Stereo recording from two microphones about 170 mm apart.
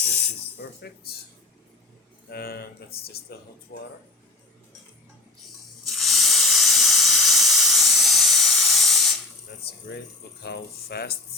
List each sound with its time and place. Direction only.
0.5 s speech: 70° left (ahead or behind)
2.3 s speech: 65° left (ahead or behind)
5.8 s steam: centre (ahead or behind)
9.5 s speech: 75° left (ahead or behind)